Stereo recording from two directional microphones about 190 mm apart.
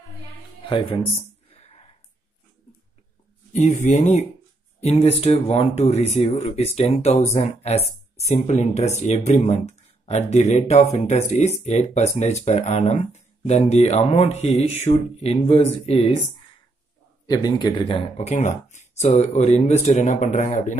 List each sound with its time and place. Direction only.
0.7 s speech: 30° left (ahead or behind)
1.5 s a sound: 35° left (ahead or behind)
3.5 s speech: 40° left (ahead or behind)
17.3 s speech: 20° left (ahead or behind); by 20.7 s 40° left (ahead or behind)